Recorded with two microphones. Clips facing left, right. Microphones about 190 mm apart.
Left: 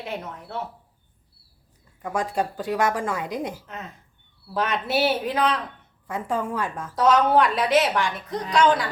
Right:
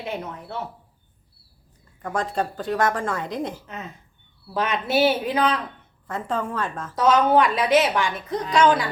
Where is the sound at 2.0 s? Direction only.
10° left (ahead or behind).